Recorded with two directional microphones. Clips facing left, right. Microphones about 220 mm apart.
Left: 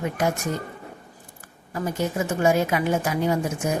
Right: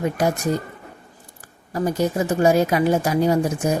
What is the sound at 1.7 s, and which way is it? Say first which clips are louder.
Speech: right 5 dB; 35° right (ahead or behind).